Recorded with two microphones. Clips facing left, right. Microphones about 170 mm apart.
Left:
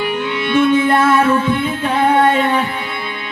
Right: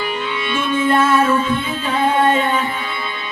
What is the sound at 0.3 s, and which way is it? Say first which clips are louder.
Music: left 9 dB; 65° left (ahead or behind).